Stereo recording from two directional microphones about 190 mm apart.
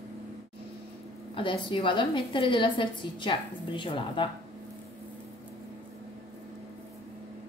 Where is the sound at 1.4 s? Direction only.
25° left (ahead or behind).